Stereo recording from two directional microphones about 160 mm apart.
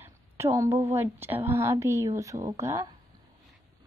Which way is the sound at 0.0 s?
15° right (ahead or behind).